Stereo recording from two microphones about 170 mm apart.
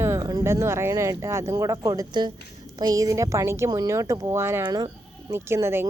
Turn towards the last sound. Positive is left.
turn(degrees=-15)  # may be behind; listen again after turning